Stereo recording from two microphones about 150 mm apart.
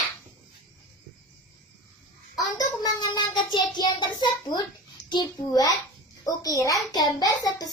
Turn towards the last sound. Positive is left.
turn(degrees=25)  # may be behind; listen again after turning